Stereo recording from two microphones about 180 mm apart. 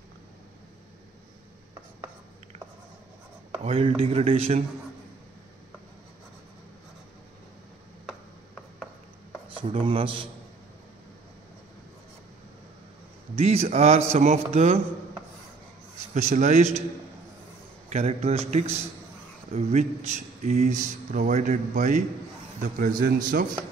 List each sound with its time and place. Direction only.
3.6 s speech: 30° right (ahead or behind)
9.5 s speech: 30° right (ahead or behind)
13.4 s speech: 35° right (ahead or behind)
16.2 s speech: 40° right (ahead or behind)
17.8 s a man's voice: 35° right (ahead or behind); by 23.4 s 50° right (ahead or behind)